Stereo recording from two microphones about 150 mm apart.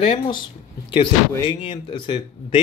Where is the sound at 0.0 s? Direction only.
40° left (ahead or behind).